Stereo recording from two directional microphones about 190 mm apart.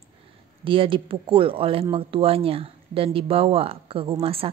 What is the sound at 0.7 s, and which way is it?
Speech, 25° right (ahead or behind).